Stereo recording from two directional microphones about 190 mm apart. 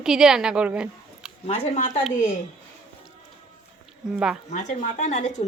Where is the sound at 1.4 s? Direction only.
35° left (ahead or behind).